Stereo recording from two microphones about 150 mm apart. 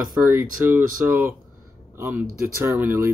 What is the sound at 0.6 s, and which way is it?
Speech, 15° right (ahead or behind).